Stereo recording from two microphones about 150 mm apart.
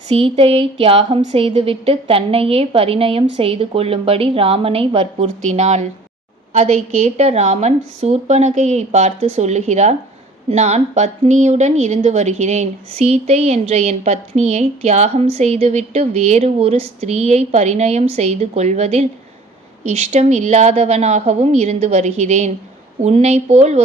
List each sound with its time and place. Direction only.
0.1 s a woman's voice: 40° right (ahead or behind)